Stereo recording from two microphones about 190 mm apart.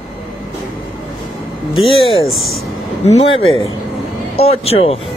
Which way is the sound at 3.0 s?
30° left (ahead or behind).